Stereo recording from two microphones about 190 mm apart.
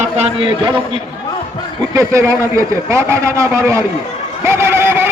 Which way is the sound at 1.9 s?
15° right (ahead or behind).